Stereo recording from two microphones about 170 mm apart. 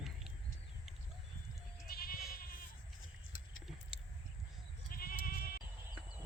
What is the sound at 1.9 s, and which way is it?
Goat, 60° left (ahead or behind).